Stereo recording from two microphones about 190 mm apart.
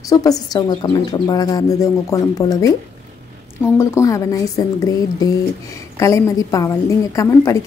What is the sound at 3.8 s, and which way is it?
A woman's voice, 15° left (ahead or behind).